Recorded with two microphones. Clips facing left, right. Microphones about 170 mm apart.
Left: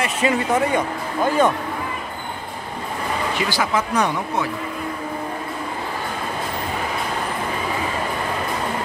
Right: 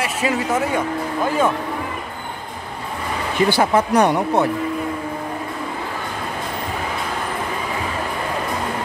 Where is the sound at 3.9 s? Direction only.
60° right (ahead or behind).